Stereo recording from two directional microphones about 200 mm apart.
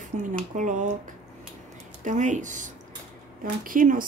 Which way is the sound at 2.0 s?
40° right (ahead or behind).